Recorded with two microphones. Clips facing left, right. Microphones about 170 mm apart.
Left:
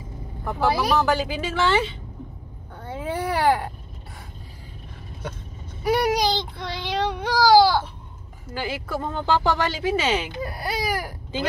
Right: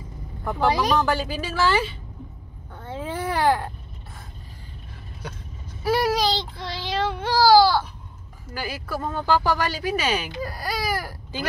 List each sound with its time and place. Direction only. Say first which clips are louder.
0.5 s speech: even; 5° left (ahead or behind); by 1.9 s 25° left (ahead or behind)
2.9 s baby cry: left 1 dB; 10° left (ahead or behind)
5.9 s speech: left 1 dB; 15° left (ahead or behind)